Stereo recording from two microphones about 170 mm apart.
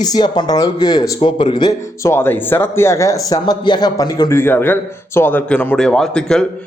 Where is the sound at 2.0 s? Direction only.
15° left (ahead or behind).